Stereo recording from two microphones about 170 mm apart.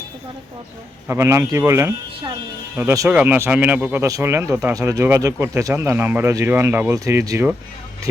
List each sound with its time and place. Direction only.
1.0 s speech: 15° right (ahead or behind)